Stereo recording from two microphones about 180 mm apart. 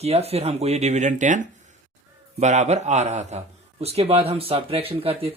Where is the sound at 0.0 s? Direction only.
35° right (ahead or behind).